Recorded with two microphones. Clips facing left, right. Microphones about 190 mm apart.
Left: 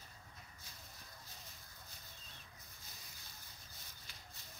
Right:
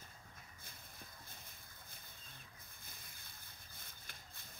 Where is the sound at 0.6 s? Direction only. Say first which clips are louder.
Right 1 dB; 55° right (ahead or behind).